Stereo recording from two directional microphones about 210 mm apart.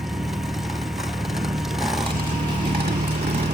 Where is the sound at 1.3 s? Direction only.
Centre (ahead or behind).